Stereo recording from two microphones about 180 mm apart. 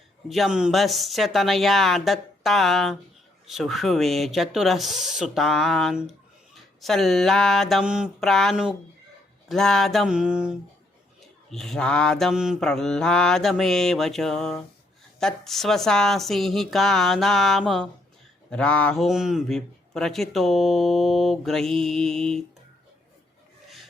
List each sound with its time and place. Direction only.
0.3 s speech: centre (ahead or behind)